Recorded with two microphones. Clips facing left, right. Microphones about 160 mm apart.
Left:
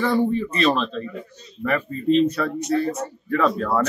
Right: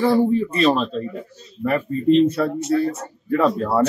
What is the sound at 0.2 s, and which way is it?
Speech, 5° right (ahead or behind).